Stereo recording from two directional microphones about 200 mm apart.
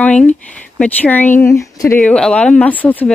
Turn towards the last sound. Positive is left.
turn(degrees=10)  # may be behind; listen again after turning